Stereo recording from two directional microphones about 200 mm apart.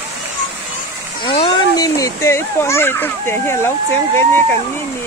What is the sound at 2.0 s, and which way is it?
Speech, 15° left (ahead or behind).